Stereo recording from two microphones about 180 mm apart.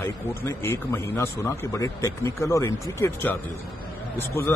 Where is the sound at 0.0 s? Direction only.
15° left (ahead or behind).